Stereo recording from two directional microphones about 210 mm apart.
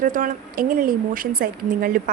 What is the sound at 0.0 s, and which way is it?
A woman's voice, 40° right (ahead or behind).